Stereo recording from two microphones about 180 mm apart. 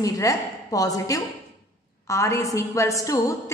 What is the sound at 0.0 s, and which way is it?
A woman's voice, 20° left (ahead or behind).